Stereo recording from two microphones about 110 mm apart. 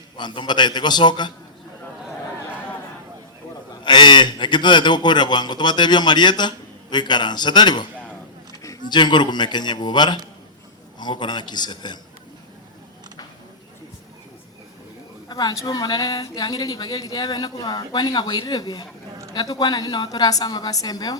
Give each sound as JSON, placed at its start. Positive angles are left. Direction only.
{"t": 0.2, "sound": "a man's voice", "side_deg": 40}
{"t": 3.8, "sound": "a man's voice", "side_deg": 45}
{"t": 8.9, "sound": "a man's voice", "side_deg": 45}
{"t": 15.3, "sound": "a woman's voice", "side_deg": 35}